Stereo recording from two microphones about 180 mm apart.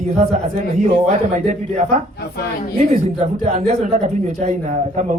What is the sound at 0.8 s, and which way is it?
A man's voice, 40° right (ahead or behind).